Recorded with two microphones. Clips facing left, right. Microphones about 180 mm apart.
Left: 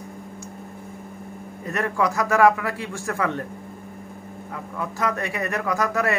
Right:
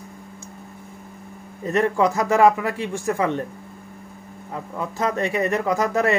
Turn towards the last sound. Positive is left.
turn(degrees=-25)  # may be behind; listen again after turning